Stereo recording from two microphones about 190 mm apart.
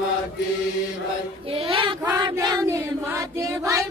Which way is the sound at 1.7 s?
25° right (ahead or behind).